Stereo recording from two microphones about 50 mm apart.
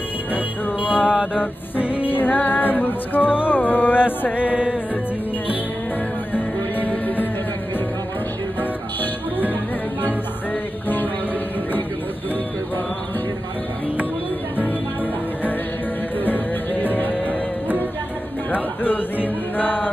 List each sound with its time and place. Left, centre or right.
0.8 s mantra: right
2.0 s music: left
4.4 s music: right
6.3 s music: left
16.3 s music: left